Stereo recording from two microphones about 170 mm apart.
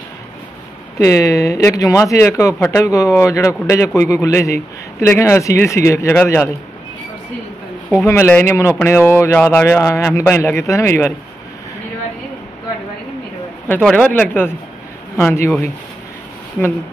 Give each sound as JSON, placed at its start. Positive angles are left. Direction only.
{"t": 0.9, "sound": "speech", "side_deg": 20}
{"t": 8.0, "sound": "speech", "side_deg": 15}
{"t": 13.7, "sound": "speech", "side_deg": 5}